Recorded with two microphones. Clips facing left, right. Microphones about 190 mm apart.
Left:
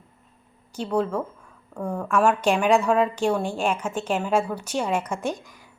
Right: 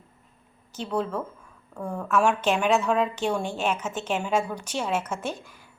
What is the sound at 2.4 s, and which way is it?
Speech, 10° left (ahead or behind).